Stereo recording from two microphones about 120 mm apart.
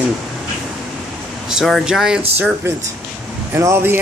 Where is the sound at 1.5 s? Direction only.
5° right (ahead or behind).